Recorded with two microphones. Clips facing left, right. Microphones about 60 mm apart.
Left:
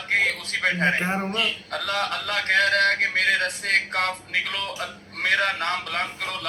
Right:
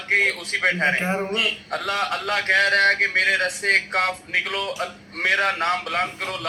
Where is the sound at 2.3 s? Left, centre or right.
Right.